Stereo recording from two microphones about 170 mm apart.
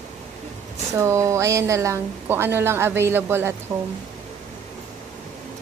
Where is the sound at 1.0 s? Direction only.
15° right (ahead or behind).